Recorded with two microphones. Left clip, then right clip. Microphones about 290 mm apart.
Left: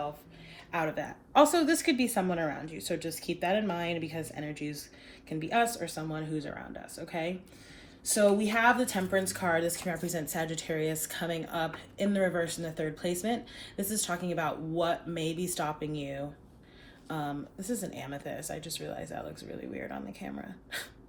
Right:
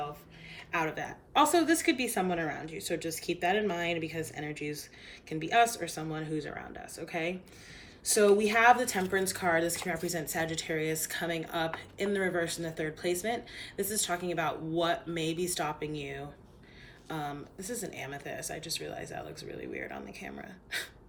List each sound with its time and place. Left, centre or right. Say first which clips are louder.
0.7 s a woman's voice: even; centre
17.1 s speech: left 1 dB; left
17.7 s a woman's voice: even; centre
18.3 s speech: right 1 dB; left